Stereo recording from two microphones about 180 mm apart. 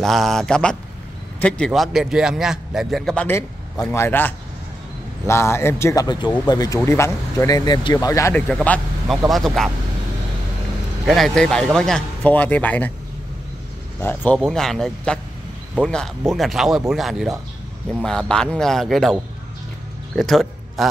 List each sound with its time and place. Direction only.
0.0 s a man's voice: centre (ahead or behind)
3.3 s a man's voice: 15° left (ahead or behind)
9.0 s a man's voice: centre (ahead or behind)
11.1 s a man's voice: centre (ahead or behind)
14.0 s a man's voice: 10° left (ahead or behind)
20.2 s a sound: centre (ahead or behind)